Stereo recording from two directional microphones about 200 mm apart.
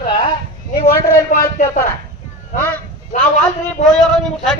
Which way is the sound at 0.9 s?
15° left (ahead or behind).